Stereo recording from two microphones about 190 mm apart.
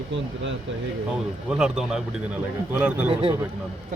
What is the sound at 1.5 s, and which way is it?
A man's voice, 5° right (ahead or behind).